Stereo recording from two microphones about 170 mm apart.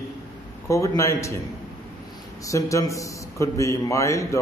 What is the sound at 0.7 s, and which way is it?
Speech, 20° left (ahead or behind).